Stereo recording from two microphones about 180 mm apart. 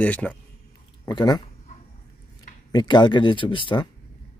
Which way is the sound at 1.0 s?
25° left (ahead or behind).